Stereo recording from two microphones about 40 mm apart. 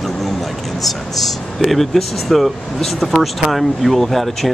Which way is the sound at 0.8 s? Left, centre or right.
Centre.